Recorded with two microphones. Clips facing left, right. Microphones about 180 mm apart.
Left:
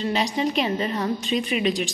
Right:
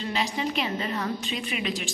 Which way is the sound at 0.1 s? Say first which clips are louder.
Left 3 dB; 20° left (ahead or behind).